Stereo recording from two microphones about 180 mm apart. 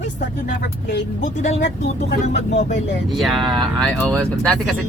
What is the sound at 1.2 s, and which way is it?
Speech, 40° left (ahead or behind).